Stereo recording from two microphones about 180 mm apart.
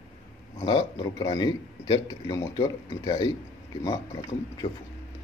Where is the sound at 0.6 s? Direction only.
25° left (ahead or behind).